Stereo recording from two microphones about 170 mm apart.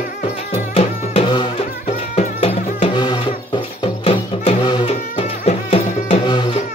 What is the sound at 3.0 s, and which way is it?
Music, 25° left (ahead or behind).